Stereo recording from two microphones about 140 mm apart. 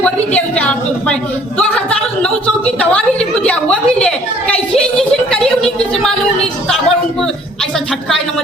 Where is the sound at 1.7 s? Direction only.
5° left (ahead or behind).